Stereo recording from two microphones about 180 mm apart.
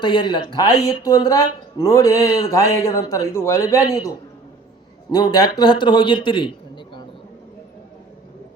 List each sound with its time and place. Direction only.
0.0 s speech: 25° left (ahead or behind)
5.1 s a man's voice: 20° left (ahead or behind)